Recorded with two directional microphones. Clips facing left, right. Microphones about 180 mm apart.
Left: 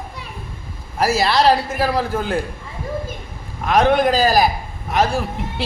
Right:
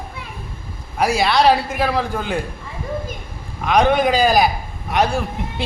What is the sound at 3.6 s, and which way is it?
A man's voice, centre (ahead or behind).